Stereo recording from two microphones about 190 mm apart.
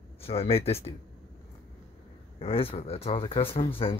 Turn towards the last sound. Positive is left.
turn(degrees=30)  # may be behind; listen again after turning